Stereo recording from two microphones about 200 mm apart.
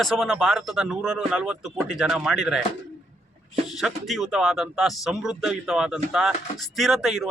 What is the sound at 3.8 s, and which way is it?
Speech, centre (ahead or behind).